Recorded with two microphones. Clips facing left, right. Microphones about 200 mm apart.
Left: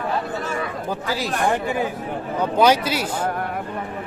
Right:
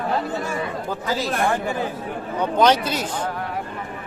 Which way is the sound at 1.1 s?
15° left (ahead or behind).